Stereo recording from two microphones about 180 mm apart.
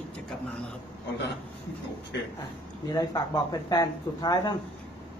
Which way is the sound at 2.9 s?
20° left (ahead or behind).